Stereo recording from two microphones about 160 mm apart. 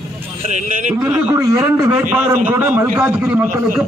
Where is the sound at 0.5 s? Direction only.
50° right (ahead or behind).